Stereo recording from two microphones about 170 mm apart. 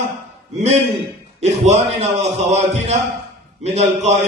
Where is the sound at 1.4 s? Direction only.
40° right (ahead or behind).